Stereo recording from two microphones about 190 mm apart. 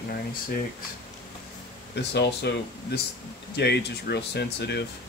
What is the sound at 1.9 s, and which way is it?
Speech, 60° left (ahead or behind).